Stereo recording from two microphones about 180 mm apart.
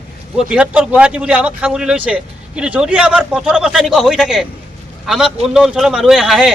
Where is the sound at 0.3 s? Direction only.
5° right (ahead or behind).